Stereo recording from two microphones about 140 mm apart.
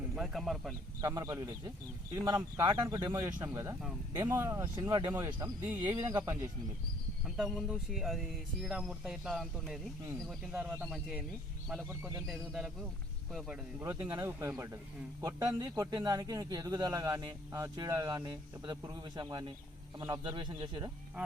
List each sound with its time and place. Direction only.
0.1 s speech: centre (ahead or behind)
1.0 s speech: 25° right (ahead or behind)
7.3 s speech: centre (ahead or behind)
10.5 s speech: 15° right (ahead or behind)
11.9 s speech: 20° right (ahead or behind)
12.2 s speech: centre (ahead or behind)
13.7 s speech: 15° right (ahead or behind); by 20.9 s 35° right (ahead or behind)